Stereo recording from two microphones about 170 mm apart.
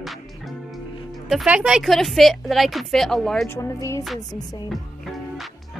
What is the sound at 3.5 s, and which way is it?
Music, 20° left (ahead or behind).